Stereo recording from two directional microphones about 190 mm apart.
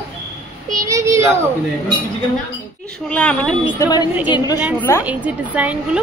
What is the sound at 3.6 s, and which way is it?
A woman's voice, 25° left (ahead or behind).